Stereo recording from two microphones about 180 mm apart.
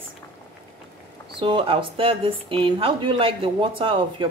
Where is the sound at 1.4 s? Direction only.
30° right (ahead or behind).